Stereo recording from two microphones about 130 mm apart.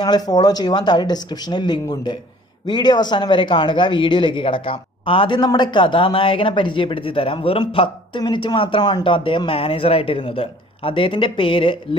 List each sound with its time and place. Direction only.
0.0 s speech: 30° left (ahead or behind)